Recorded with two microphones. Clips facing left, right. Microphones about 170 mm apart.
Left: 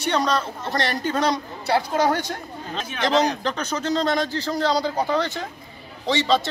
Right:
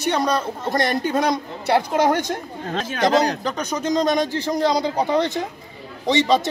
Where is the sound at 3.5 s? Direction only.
10° right (ahead or behind).